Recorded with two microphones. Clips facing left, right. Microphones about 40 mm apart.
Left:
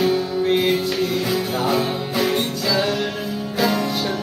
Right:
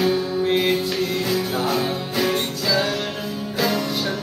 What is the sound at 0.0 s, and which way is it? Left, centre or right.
Music, centre.